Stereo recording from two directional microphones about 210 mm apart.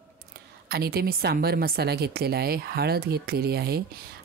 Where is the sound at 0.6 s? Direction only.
50° right (ahead or behind).